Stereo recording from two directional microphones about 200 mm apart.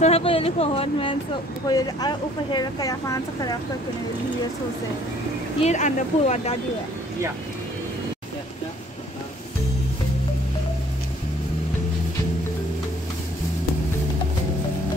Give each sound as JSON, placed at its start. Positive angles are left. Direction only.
{"t": 0.0, "sound": "speech", "side_deg": 30}
{"t": 5.6, "sound": "speech", "side_deg": 35}